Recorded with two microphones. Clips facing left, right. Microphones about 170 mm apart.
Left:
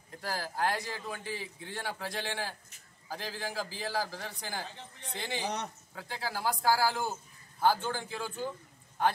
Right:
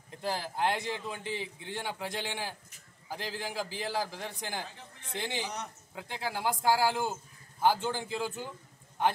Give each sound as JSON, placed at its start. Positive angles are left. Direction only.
{"t": 0.2, "sound": "a man's voice", "side_deg": -20}